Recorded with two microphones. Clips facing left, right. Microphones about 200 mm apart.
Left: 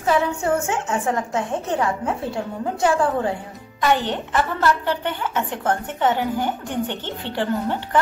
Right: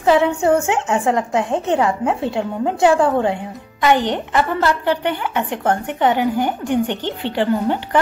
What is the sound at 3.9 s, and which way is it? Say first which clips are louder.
Speech: right 4 dB; 15° right (ahead or behind).